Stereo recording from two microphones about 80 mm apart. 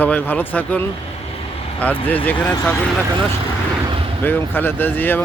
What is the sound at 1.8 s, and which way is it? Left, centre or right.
Speech, left.